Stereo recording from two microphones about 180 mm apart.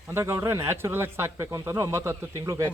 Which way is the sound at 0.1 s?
15° right (ahead or behind).